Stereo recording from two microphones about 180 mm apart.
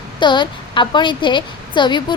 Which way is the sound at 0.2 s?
25° left (ahead or behind).